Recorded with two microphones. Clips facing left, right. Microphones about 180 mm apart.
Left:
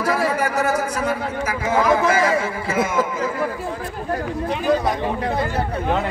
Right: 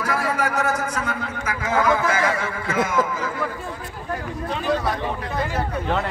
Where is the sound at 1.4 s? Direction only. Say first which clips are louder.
Left 1 dB; 30° left (ahead or behind).